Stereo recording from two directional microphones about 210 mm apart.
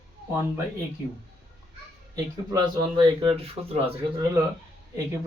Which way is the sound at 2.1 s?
20° right (ahead or behind).